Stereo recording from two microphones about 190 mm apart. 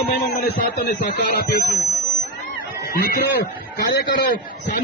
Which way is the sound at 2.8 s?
55° left (ahead or behind).